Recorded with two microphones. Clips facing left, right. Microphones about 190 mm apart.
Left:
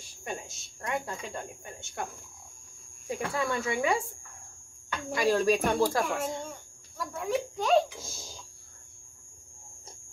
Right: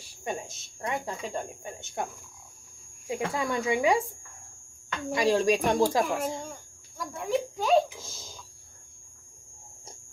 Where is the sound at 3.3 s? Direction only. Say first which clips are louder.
Right 2 dB; 20° right (ahead or behind).